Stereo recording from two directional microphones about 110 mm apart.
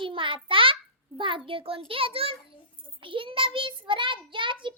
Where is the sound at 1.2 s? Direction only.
50° right (ahead or behind).